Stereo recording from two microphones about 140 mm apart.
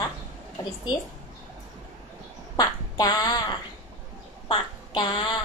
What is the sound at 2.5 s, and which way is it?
Speech, 30° left (ahead or behind).